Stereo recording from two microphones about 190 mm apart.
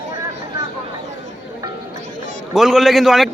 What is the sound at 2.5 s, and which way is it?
Speech, centre (ahead or behind).